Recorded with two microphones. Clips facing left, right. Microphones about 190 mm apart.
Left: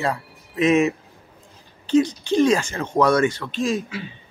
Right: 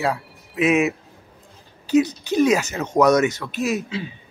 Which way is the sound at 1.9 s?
5° right (ahead or behind).